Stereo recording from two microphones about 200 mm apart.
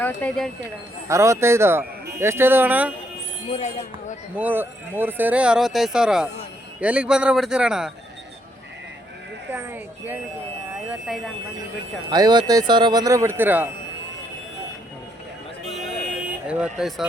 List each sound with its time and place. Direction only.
0.0 s speech: 5° left (ahead or behind)
1.0 s speech: 15° right (ahead or behind)
3.5 s speech: 35° left (ahead or behind)
4.4 s a man's voice: 10° right (ahead or behind)
9.5 s speech: 10° right (ahead or behind)
12.1 s speech: 20° right (ahead or behind)
16.5 s a man's voice: 5° right (ahead or behind)